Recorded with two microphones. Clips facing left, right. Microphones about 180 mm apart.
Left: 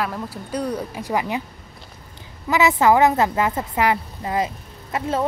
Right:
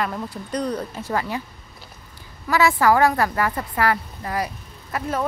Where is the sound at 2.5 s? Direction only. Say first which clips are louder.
Left 1 dB; 20° left (ahead or behind).